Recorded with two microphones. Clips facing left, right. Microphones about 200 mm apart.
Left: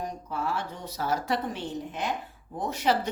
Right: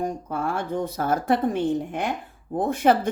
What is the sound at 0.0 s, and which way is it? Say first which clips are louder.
A woman's voice: right 6 dB; 50° right (ahead or behind).